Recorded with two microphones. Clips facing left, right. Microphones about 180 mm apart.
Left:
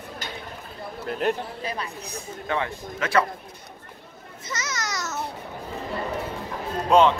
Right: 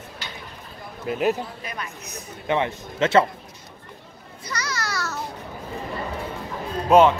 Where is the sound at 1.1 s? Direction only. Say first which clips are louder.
Right 3 dB; 5° right (ahead or behind).